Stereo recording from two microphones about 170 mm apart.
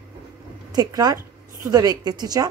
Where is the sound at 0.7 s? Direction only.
25° right (ahead or behind).